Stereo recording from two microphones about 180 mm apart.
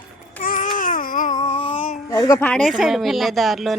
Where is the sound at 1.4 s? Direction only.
35° left (ahead or behind).